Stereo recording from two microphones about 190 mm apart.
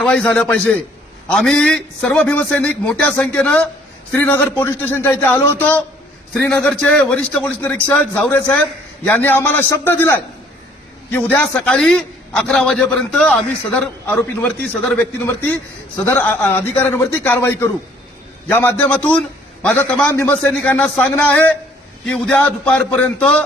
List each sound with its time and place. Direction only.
0.0 s a man's voice: 5° left (ahead or behind)
16.0 s a man's voice: 10° left (ahead or behind)